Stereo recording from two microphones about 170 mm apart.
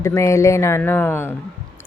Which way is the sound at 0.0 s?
15° left (ahead or behind).